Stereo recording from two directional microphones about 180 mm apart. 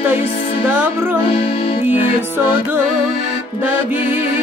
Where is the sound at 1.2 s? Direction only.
30° left (ahead or behind).